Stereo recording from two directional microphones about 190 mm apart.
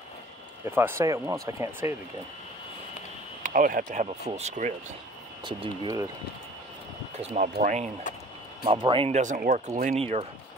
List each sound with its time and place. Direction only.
0.7 s speech: 10° right (ahead or behind)
3.4 s speech: 45° right (ahead or behind)
5.4 s speech: 25° right (ahead or behind)
7.2 s speech: 45° right (ahead or behind)
8.6 s speech: 25° right (ahead or behind)